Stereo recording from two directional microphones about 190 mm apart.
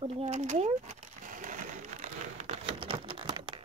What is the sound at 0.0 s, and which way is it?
Bird, 35° right (ahead or behind).